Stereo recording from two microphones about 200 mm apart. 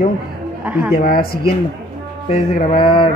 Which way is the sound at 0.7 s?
5° right (ahead or behind).